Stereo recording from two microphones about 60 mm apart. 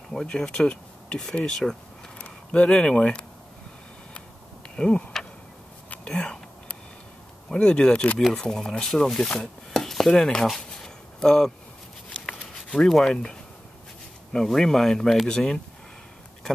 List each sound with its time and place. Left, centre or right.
0.1 s speech: centre
4.6 s a sound: centre
7.5 s speech: centre
8.3 s speech: centre
9.7 s chopping: centre
10.4 s a sound: centre
14.3 s speech: centre